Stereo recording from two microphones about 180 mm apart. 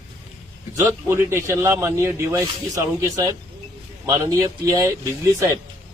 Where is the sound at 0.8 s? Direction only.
15° right (ahead or behind).